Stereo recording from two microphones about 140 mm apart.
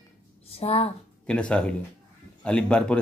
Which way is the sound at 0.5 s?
45° left (ahead or behind).